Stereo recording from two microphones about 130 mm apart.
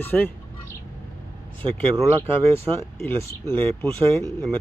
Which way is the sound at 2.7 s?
40° right (ahead or behind).